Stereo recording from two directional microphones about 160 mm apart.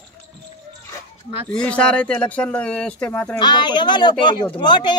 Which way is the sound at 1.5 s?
5° left (ahead or behind).